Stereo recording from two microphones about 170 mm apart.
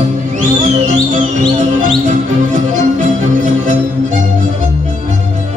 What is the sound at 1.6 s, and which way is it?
Music, 45° right (ahead or behind).